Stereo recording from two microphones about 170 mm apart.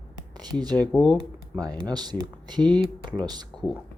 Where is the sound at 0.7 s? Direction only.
5° left (ahead or behind).